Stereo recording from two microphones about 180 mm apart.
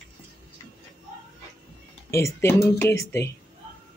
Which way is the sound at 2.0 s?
15° left (ahead or behind).